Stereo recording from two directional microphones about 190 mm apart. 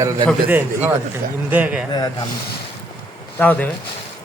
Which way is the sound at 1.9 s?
20° left (ahead or behind).